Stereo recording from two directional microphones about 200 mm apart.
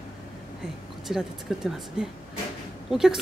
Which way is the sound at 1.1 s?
Centre (ahead or behind).